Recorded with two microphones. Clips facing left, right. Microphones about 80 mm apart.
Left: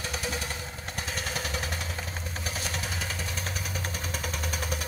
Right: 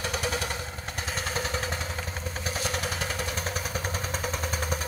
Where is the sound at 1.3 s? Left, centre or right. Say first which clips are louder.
Right 3 dB; right.